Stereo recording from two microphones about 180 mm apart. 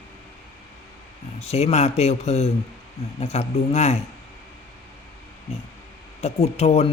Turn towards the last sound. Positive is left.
turn(degrees=35)  # may be behind; listen again after turning